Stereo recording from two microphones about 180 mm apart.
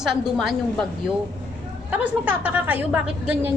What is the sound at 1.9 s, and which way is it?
A woman's voice, 10° right (ahead or behind).